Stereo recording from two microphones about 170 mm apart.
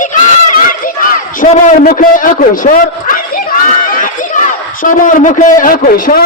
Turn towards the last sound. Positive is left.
turn(degrees=55)  # may be behind; listen again after turning